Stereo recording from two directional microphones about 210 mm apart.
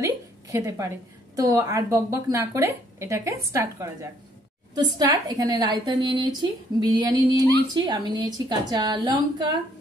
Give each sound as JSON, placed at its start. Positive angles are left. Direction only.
{"t": 0.0, "sound": "a woman's voice", "side_deg": -15}